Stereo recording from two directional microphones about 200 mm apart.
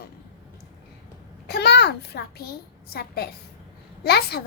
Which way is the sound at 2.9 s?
50° left (ahead or behind).